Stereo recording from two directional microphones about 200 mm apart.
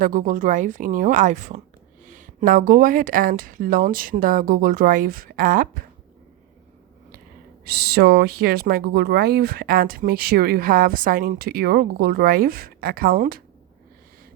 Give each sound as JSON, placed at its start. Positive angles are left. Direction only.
{"t": 0.0, "sound": "a woman's voice", "side_deg": -40}
{"t": 7.6, "sound": "speech", "side_deg": -50}